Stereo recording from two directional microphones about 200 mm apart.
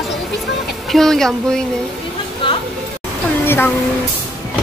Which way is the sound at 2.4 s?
25° left (ahead or behind).